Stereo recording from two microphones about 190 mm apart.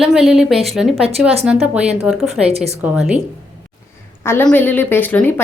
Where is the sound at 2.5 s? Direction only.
35° right (ahead or behind).